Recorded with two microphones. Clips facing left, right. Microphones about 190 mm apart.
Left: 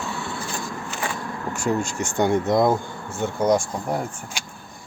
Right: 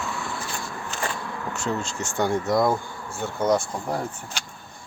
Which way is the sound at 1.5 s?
10° left (ahead or behind).